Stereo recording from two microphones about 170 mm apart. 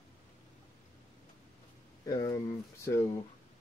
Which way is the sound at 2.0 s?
20° left (ahead or behind).